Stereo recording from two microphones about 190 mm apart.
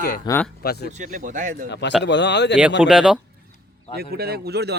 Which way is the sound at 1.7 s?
65° left (ahead or behind).